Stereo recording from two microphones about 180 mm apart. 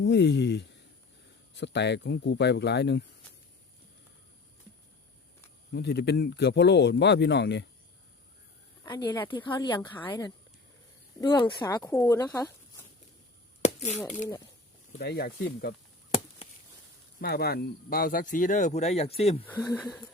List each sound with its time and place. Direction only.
0.0 s speech: 75° left (ahead or behind)
5.7 s speech: 65° left (ahead or behind)
8.8 s a woman's voice: 25° left (ahead or behind)
10.0 s speech: 10° left (ahead or behind)
11.2 s speech: 25° left (ahead or behind)
13.6 s chop: 40° left (ahead or behind)
14.9 s speech: 60° left (ahead or behind)
17.2 s speech: 60° left (ahead or behind); by 19.5 s 35° left (ahead or behind)
19.5 s speech: 10° left (ahead or behind)